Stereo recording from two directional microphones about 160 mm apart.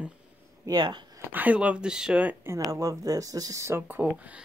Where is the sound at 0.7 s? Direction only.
25° right (ahead or behind).